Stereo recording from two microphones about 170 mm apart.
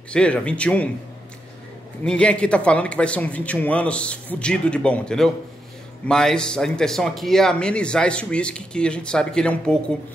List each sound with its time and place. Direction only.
0.1 s a man's voice: 5° left (ahead or behind)
2.0 s a man's voice: 5° left (ahead or behind)